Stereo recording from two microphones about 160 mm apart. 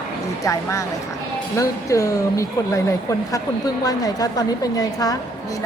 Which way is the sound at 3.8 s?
25° left (ahead or behind).